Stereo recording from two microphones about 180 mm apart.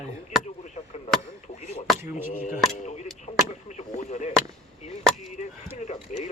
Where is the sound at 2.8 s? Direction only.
40° left (ahead or behind).